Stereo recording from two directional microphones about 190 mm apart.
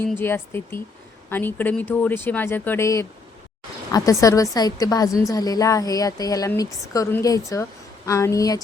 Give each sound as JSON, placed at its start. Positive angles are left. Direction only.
{"t": 0.2, "sound": "a woman's voice", "side_deg": 10}